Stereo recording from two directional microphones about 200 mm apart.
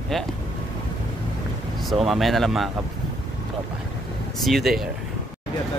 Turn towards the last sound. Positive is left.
turn(degrees=0)  # may be behind; listen again after turning